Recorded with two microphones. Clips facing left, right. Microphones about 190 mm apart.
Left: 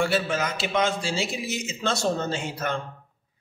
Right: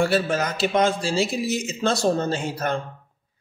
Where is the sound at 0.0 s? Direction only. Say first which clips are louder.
Right 3 dB; 40° right (ahead or behind).